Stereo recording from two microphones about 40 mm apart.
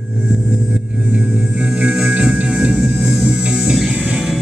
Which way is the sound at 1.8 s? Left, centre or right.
Centre.